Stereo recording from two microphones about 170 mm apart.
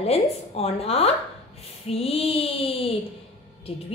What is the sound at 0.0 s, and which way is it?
Speech, 35° left (ahead or behind).